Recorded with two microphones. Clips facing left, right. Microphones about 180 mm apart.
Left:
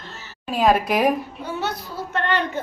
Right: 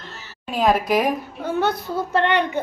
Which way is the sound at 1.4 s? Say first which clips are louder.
Right 9 dB; 55° right (ahead or behind).